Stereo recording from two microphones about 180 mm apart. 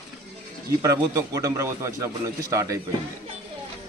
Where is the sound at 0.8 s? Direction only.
20° right (ahead or behind).